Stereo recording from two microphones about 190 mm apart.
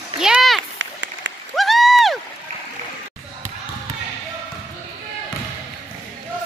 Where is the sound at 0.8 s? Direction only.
70° right (ahead or behind).